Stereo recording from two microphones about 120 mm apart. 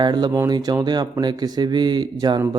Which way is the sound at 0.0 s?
35° right (ahead or behind).